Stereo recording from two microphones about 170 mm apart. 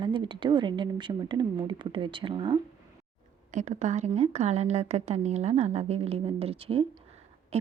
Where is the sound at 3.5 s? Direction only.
45° right (ahead or behind).